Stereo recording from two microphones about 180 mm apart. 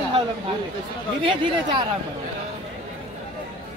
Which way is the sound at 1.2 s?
30° right (ahead or behind).